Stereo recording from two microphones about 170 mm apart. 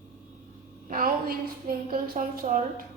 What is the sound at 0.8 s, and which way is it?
A woman's voice, 55° right (ahead or behind).